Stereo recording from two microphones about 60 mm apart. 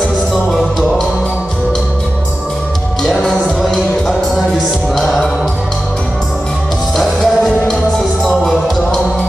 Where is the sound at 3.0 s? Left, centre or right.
Centre.